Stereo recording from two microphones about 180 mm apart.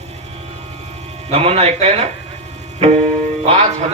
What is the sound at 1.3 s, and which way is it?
Speech, 35° right (ahead or behind).